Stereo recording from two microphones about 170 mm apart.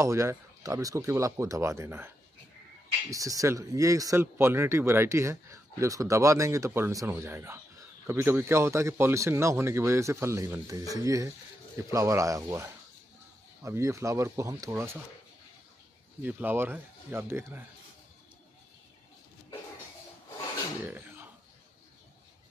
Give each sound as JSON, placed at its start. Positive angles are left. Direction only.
{"t": 0.0, "sound": "speech", "side_deg": -15}
{"t": 16.2, "sound": "speech", "side_deg": -10}
{"t": 20.8, "sound": "a sound", "side_deg": -15}